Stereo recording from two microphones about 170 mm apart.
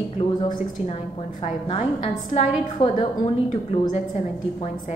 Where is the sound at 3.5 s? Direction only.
40° left (ahead or behind).